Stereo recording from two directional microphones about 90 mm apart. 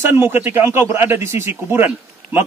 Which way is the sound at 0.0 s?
25° right (ahead or behind).